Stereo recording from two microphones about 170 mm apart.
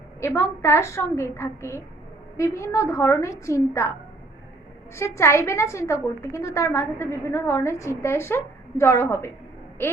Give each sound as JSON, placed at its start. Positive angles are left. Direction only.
{"t": 0.2, "sound": "a woman's voice", "side_deg": 15}
{"t": 4.9, "sound": "a woman's voice", "side_deg": 15}